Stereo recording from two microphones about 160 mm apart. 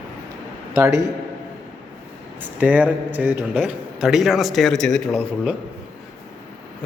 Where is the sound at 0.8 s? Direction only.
20° right (ahead or behind).